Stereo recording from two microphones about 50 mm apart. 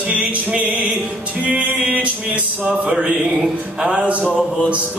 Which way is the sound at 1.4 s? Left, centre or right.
Right.